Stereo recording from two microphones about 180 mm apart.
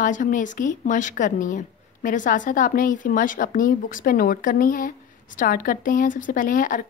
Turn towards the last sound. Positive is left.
turn(degrees=50)  # may be behind; listen again after turning